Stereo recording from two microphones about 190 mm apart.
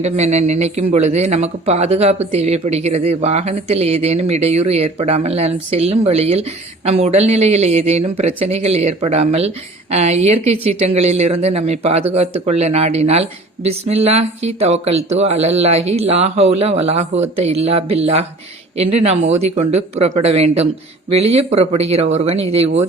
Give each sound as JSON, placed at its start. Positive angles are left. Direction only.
{"t": 0.0, "sound": "speech", "side_deg": -35}